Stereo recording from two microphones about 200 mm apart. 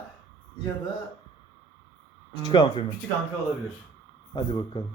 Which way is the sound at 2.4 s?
25° left (ahead or behind).